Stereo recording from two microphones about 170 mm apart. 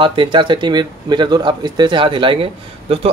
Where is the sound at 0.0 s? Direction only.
30° right (ahead or behind).